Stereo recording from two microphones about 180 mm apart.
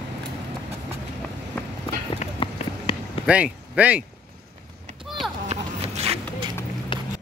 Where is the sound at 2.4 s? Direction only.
30° left (ahead or behind).